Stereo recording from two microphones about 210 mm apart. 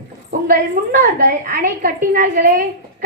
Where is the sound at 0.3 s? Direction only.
40° right (ahead or behind).